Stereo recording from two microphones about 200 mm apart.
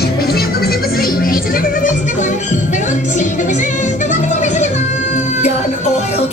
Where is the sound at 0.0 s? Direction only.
50° left (ahead or behind).